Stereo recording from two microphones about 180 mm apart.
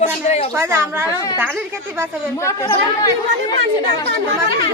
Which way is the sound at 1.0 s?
20° left (ahead or behind).